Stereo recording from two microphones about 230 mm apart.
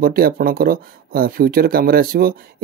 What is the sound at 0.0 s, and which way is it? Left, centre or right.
Speech, right.